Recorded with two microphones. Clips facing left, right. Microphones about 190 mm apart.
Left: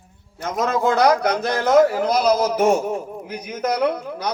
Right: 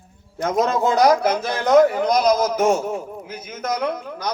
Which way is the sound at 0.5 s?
35° right (ahead or behind).